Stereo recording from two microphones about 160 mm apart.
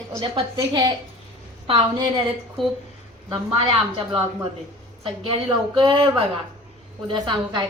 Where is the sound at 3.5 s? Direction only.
35° right (ahead or behind).